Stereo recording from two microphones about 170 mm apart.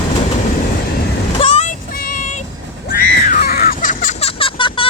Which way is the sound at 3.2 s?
55° left (ahead or behind).